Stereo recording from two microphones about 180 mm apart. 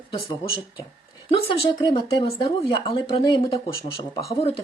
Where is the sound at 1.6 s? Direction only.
25° left (ahead or behind).